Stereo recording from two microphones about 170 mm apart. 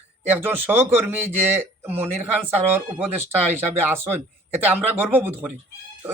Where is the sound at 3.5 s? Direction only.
15° right (ahead or behind).